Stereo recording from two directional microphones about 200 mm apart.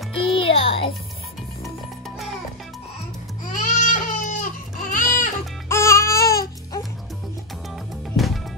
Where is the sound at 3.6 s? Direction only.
40° left (ahead or behind).